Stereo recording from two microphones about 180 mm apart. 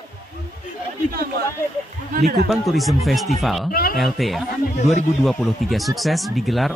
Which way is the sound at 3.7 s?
55° left (ahead or behind).